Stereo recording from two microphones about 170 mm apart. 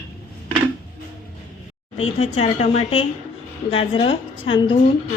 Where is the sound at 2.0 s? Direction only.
35° left (ahead or behind).